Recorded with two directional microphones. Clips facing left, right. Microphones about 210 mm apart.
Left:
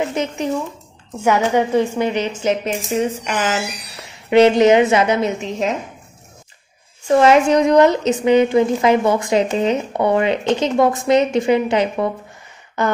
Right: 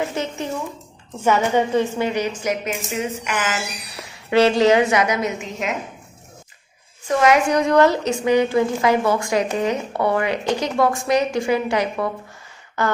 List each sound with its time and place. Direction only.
0.1 s a woman's voice: 20° left (ahead or behind); by 3.5 s 35° left (ahead or behind)
4.1 s a woman's voice: 20° left (ahead or behind)
7.1 s a woman's voice: 30° left (ahead or behind)